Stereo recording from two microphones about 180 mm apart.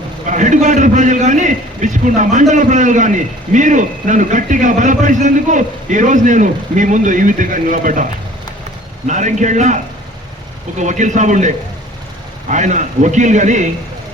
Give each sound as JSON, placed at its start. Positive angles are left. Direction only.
{"t": 0.3, "sound": "a man's voice", "side_deg": -45}
{"t": 9.0, "sound": "a man's voice", "side_deg": -40}